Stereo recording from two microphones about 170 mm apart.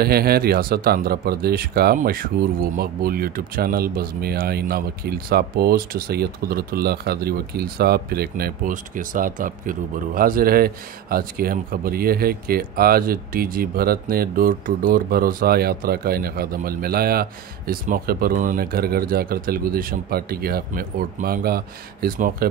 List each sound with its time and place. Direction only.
0.0 s speech: 65° right (ahead or behind)